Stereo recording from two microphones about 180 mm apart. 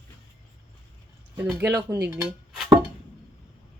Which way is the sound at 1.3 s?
10° right (ahead or behind).